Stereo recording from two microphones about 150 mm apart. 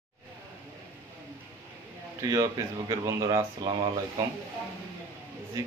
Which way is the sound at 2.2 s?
20° right (ahead or behind).